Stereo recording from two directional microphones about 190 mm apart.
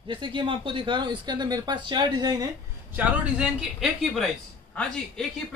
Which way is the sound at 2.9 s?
5° right (ahead or behind).